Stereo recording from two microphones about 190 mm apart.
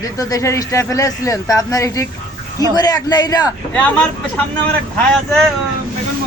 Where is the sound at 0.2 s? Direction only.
15° left (ahead or behind).